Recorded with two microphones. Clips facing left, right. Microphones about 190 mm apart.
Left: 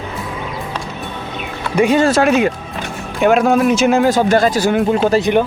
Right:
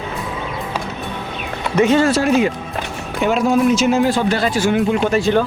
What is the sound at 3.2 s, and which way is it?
Speech, 60° left (ahead or behind).